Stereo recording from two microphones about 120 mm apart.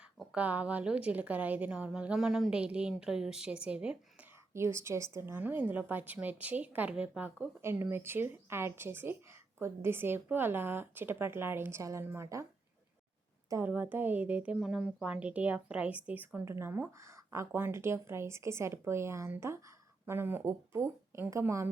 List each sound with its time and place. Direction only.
0.2 s a woman's voice: 10° right (ahead or behind)
4.5 s a woman's voice: 20° right (ahead or behind)
13.7 s a woman's voice: 15° right (ahead or behind)